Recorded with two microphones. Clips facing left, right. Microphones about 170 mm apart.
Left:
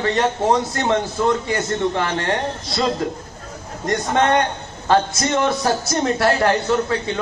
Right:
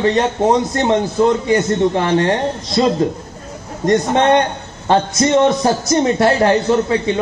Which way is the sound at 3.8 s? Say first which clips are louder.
Right 5 dB; 25° right (ahead or behind).